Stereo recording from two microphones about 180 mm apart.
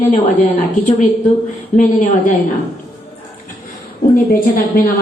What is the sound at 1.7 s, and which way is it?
Speech, 45° left (ahead or behind).